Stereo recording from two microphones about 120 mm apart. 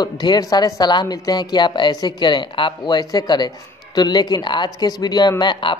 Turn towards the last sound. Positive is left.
turn(degrees=40)  # may be behind; listen again after turning